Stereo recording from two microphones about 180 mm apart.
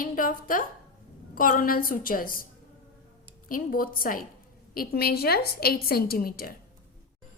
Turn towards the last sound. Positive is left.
turn(degrees=55)  # may be behind; listen again after turning